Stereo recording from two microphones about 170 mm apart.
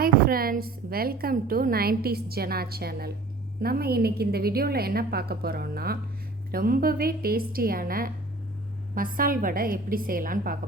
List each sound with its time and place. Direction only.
0.0 s a woman's voice: 60° right (ahead or behind)